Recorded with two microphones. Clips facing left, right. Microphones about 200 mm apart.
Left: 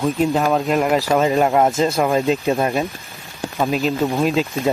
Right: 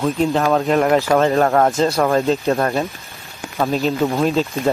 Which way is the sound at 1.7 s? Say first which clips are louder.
Right 1 dB; centre (ahead or behind).